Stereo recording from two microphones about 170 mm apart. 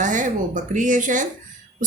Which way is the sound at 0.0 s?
50° right (ahead or behind).